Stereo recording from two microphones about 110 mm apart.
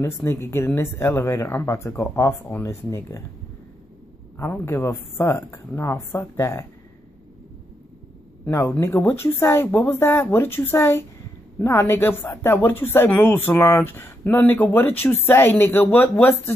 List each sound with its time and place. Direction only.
0.0 s speech: 20° left (ahead or behind)
4.4 s speech: 20° left (ahead or behind)
8.5 s speech: 25° left (ahead or behind)